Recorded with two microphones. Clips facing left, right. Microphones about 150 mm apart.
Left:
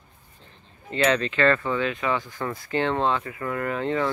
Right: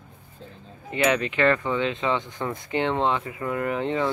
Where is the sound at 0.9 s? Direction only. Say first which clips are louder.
Even; 15° right (ahead or behind).